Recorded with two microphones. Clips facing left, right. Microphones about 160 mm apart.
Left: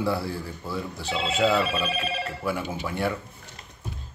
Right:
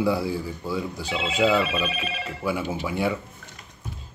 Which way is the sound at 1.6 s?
35° left (ahead or behind).